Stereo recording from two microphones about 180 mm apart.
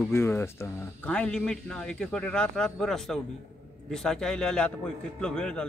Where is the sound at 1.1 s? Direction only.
5° left (ahead or behind).